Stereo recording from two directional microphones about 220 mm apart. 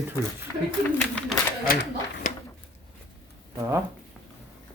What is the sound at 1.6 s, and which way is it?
Speech, 45° left (ahead or behind).